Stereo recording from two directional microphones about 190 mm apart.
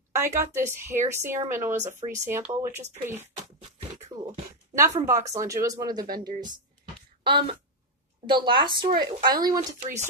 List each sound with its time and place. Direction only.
0.1 s a woman's voice: 15° right (ahead or behind)
4.1 s beatboxing: 30° right (ahead or behind)
4.7 s a woman's voice: 15° right (ahead or behind)
6.0 s speech: 50° right (ahead or behind)
7.2 s speech: 25° right (ahead or behind)